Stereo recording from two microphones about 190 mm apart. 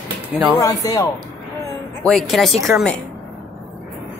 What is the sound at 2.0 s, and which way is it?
Speech, centre (ahead or behind).